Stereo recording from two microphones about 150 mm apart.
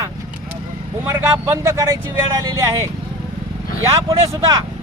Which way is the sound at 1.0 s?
20° right (ahead or behind).